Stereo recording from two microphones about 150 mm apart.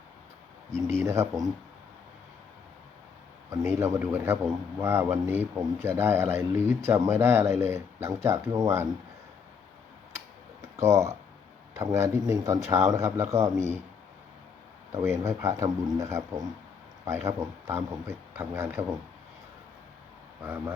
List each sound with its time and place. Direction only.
0.8 s speech: 15° right (ahead or behind)
3.5 s speech: 20° right (ahead or behind)
10.8 s speech: 20° right (ahead or behind)
14.9 s speech: 20° right (ahead or behind)
20.4 s speech: 15° right (ahead or behind)